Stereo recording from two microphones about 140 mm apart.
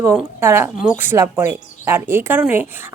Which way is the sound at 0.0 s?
20° right (ahead or behind).